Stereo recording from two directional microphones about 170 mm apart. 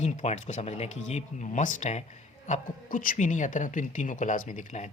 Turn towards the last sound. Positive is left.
turn(degrees=45)  # may be behind; listen again after turning